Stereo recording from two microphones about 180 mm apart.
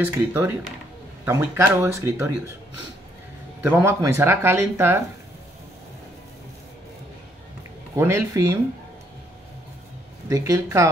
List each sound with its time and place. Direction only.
0.0 s speech: 10° right (ahead or behind)
3.6 s speech: 10° right (ahead or behind)
7.9 s speech: 15° right (ahead or behind)
10.3 s speech: 20° right (ahead or behind)